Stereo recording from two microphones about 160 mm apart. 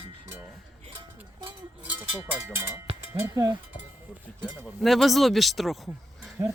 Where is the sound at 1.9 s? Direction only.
10° right (ahead or behind).